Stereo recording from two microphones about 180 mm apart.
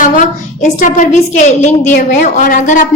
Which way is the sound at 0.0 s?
45° left (ahead or behind).